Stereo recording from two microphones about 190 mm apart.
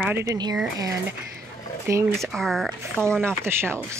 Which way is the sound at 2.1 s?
Centre (ahead or behind).